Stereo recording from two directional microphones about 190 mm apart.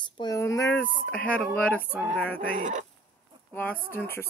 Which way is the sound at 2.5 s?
40° right (ahead or behind).